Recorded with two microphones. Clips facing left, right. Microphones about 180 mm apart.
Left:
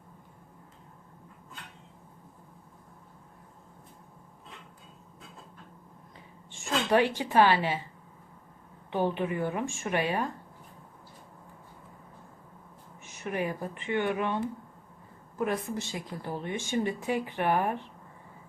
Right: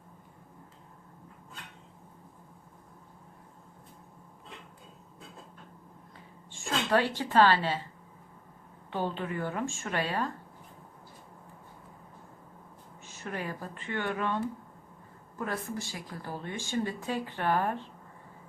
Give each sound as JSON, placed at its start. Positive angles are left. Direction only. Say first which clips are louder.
{"t": 6.5, "sound": "a woman's voice", "louder": "left 2 dB", "side_deg": 15}
{"t": 8.9, "sound": "speech", "louder": "left 4 dB", "side_deg": 15}
{"t": 13.0, "sound": "speech", "louder": "left 5 dB", "side_deg": 20}